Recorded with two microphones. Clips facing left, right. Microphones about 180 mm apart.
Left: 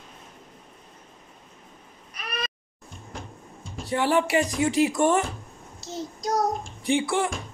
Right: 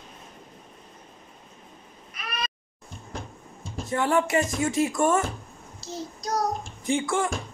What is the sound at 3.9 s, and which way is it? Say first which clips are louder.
Speech: left 1 dB; 15° left (ahead or behind).